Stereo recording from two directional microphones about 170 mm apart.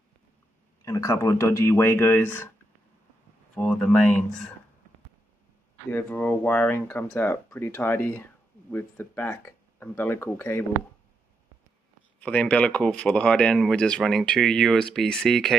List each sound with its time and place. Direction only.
0.8 s speech: 20° left (ahead or behind)
3.5 s speech: 5° left (ahead or behind)
5.9 s speech: 10° left (ahead or behind)
12.2 s speech: 10° left (ahead or behind)